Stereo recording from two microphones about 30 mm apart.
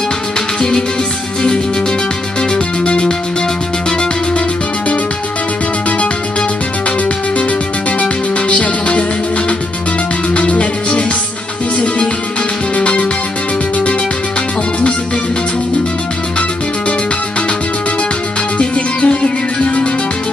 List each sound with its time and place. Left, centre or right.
2.8 s music: left
8.0 s music: left
10.3 s music: left
12.7 s music: left
18.6 s music: left